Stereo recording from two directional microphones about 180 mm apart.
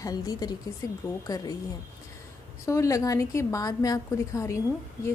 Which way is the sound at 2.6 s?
15° left (ahead or behind).